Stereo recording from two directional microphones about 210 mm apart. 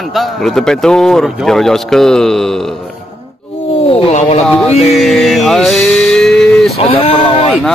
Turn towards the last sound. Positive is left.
turn(degrees=25)  # may be behind; listen again after turning